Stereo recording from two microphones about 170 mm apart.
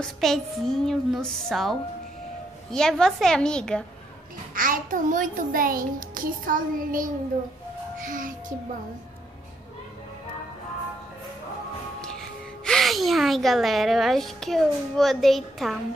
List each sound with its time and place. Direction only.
0.0 s a child's voice: centre (ahead or behind)
4.6 s a child's voice: 50° right (ahead or behind)
8.0 s music: 50° right (ahead or behind)
12.0 s a woman's voice: 5° left (ahead or behind)